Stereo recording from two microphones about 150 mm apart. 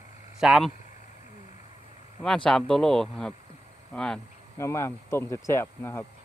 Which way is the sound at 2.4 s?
5° left (ahead or behind).